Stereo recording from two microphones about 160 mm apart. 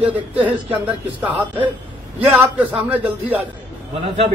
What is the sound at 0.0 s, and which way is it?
Speech, 10° right (ahead or behind).